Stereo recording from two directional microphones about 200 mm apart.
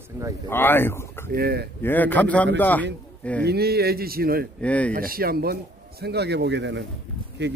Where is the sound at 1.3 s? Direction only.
50° right (ahead or behind).